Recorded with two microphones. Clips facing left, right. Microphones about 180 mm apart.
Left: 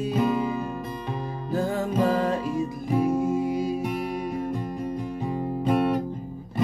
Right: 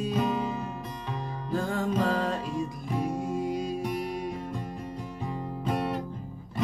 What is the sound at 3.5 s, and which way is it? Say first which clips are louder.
Music: left 5 dB; 5° left (ahead or behind).